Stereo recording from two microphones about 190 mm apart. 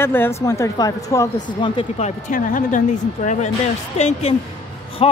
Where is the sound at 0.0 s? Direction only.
10° left (ahead or behind).